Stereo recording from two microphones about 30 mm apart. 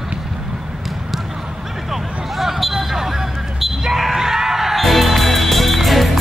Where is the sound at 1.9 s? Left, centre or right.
Centre.